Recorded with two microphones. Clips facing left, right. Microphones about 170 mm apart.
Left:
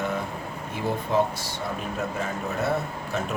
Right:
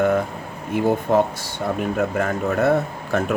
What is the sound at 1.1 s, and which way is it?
Speech, 55° right (ahead or behind).